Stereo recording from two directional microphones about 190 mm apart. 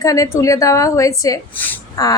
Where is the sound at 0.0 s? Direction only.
15° left (ahead or behind).